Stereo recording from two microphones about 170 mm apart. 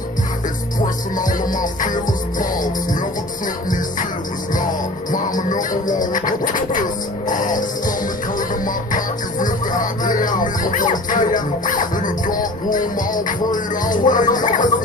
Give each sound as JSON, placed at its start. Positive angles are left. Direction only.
{"t": 1.1, "sound": "music", "side_deg": 50}
{"t": 5.1, "sound": "music", "side_deg": 50}
{"t": 8.9, "sound": "music", "side_deg": 50}